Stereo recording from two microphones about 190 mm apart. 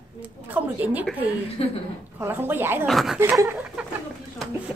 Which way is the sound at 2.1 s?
10° right (ahead or behind).